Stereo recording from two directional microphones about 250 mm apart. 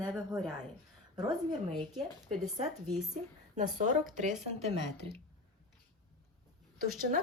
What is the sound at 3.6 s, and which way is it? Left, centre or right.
A woman's voice, right.